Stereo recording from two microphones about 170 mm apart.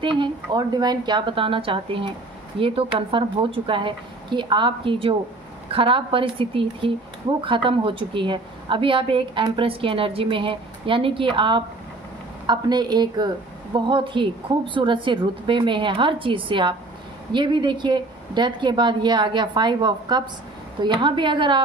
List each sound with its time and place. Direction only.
0.0 s a woman's voice: 30° right (ahead or behind)